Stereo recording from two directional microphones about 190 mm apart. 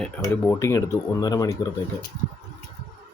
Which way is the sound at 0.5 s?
15° left (ahead or behind).